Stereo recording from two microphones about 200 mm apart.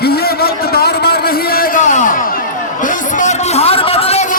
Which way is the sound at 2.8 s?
40° left (ahead or behind).